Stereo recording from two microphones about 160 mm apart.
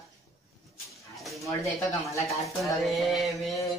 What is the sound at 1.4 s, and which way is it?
Speech, 20° left (ahead or behind).